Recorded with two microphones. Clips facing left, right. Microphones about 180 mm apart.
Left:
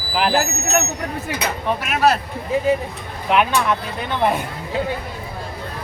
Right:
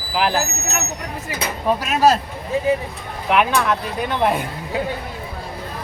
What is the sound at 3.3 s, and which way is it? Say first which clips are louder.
Speech: even; centre (ahead or behind).